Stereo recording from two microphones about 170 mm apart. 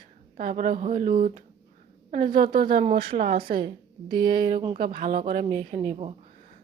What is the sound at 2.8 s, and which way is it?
Speech, 30° right (ahead or behind).